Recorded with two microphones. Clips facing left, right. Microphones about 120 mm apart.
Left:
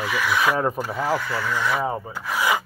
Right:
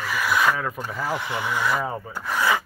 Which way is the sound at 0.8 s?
5° left (ahead or behind).